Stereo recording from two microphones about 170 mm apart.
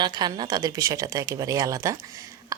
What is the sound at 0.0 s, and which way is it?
A woman's voice, 25° right (ahead or behind).